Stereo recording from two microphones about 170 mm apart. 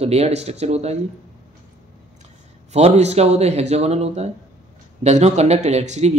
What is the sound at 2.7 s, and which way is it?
A man's voice, 40° right (ahead or behind).